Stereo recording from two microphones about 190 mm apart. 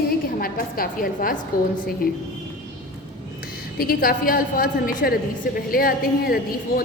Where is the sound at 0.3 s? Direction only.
50° left (ahead or behind).